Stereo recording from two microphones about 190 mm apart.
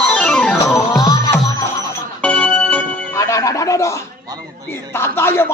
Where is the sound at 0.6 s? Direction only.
15° left (ahead or behind).